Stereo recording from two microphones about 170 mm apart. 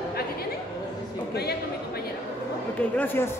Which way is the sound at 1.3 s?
70° left (ahead or behind).